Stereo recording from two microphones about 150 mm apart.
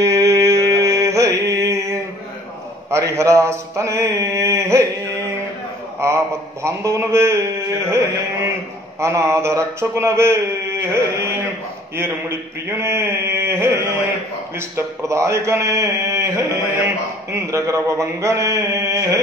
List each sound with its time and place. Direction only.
0.0 s mantra: 20° right (ahead or behind)
2.9 s a man's voice: 20° right (ahead or behind)
5.9 s a sound: 20° right (ahead or behind)
7.9 s a man's voice: 20° right (ahead or behind)
12.0 s a sound: 15° right (ahead or behind)
14.8 s a man's voice: 20° right (ahead or behind)